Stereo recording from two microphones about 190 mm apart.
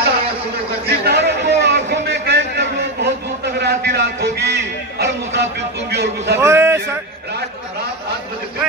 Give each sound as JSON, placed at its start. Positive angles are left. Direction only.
{"t": 0.8, "sound": "a sound", "side_deg": -60}
{"t": 3.5, "sound": "music", "side_deg": -60}
{"t": 6.3, "sound": "music", "side_deg": -15}